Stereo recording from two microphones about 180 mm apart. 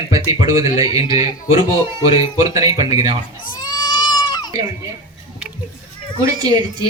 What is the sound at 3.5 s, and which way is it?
Goat, 25° left (ahead or behind).